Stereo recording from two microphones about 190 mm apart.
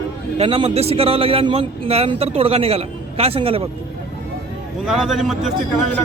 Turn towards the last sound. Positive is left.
turn(degrees=-5)  # may be behind; listen again after turning